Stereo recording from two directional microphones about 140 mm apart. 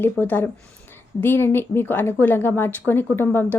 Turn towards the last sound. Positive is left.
turn(degrees=15)  # may be behind; listen again after turning